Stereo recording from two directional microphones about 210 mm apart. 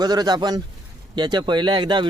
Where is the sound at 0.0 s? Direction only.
20° right (ahead or behind).